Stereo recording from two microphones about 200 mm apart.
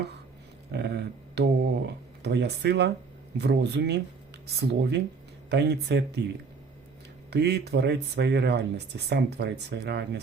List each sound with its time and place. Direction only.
0.7 s a sound: 55° right (ahead or behind)
3.3 s speech: 55° right (ahead or behind)
7.3 s speech: 55° right (ahead or behind)